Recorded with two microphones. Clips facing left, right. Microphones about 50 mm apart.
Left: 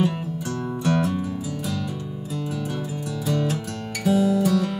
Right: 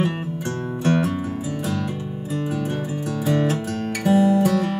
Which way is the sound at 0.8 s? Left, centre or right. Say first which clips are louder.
Right 2 dB; right.